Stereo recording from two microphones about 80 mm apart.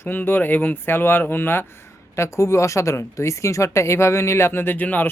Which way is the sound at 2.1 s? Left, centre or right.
Left.